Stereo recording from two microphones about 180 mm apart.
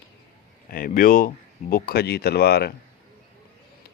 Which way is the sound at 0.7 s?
50° left (ahead or behind).